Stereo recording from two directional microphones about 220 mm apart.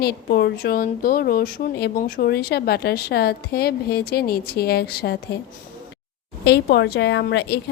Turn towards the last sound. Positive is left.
turn(degrees=50)  # may be behind; listen again after turning